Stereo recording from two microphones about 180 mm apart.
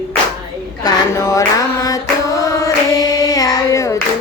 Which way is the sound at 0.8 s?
15° left (ahead or behind).